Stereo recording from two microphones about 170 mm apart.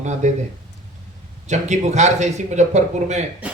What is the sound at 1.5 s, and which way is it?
A man's voice, 45° right (ahead or behind).